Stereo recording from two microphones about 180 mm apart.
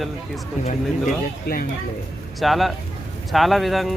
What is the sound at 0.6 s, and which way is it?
Speech, 50° left (ahead or behind).